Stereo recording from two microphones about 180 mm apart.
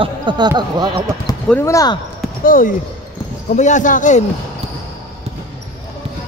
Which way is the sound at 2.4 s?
50° left (ahead or behind).